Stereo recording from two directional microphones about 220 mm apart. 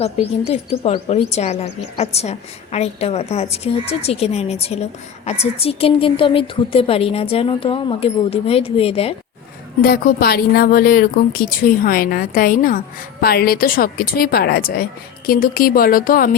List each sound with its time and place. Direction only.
0.0 s a woman's voice: 30° left (ahead or behind)
9.8 s a woman's voice: 45° left (ahead or behind)